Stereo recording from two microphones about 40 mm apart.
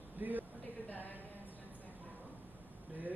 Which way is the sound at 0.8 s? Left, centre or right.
Left.